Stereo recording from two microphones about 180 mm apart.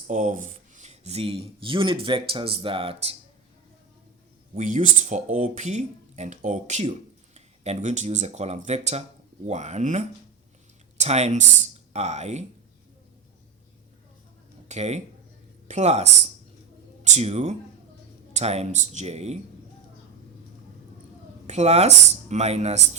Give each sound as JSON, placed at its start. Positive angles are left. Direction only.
{"t": 0.1, "sound": "speech", "side_deg": -45}
{"t": 4.5, "sound": "speech", "side_deg": -40}
{"t": 14.7, "sound": "speech", "side_deg": -40}
{"t": 21.4, "sound": "speech", "side_deg": -35}